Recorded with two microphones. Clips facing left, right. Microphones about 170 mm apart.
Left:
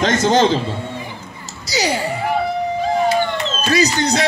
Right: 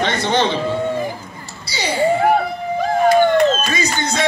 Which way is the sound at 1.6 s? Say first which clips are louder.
Left 4 dB; 90° left.